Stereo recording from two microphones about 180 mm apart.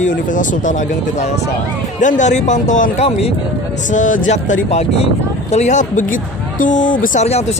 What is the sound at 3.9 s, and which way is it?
Speech, 45° left (ahead or behind).